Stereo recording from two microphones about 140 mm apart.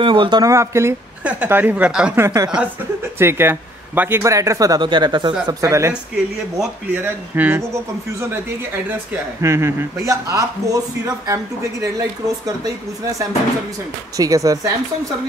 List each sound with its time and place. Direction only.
0.0 s speech: 35° right (ahead or behind); by 2.1 s 5° right (ahead or behind)
2.1 s speech: 20° right (ahead or behind)
5.5 s speech: 20° right (ahead or behind)